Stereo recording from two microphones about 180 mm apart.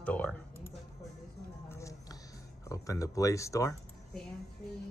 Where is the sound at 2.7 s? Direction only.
20° left (ahead or behind).